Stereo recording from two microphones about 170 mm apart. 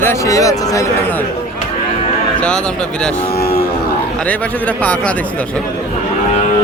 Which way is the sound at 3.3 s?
65° left (ahead or behind).